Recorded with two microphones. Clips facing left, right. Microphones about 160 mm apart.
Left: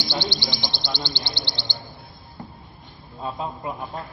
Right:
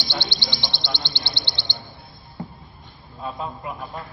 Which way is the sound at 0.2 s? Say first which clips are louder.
Left 3 dB; 60° right (ahead or behind).